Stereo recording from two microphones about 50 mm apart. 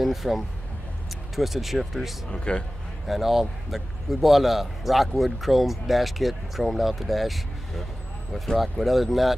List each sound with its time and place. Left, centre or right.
0.0 s a man's voice: centre
2.3 s a man's voice: left
3.1 s a man's voice: centre